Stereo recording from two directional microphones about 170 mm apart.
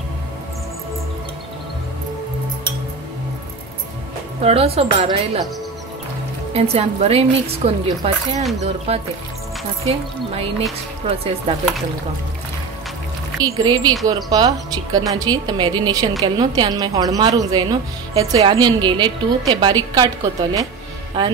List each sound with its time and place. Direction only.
4.4 s speech: 35° right (ahead or behind)
6.5 s speech: 35° right (ahead or behind)
11.1 s speech: 35° right (ahead or behind)
13.4 s a woman's voice: 25° right (ahead or behind)